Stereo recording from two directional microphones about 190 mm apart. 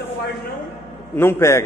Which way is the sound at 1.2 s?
15° left (ahead or behind).